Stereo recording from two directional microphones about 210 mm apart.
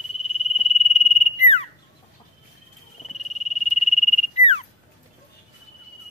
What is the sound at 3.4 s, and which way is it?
Frog, 30° left (ahead or behind).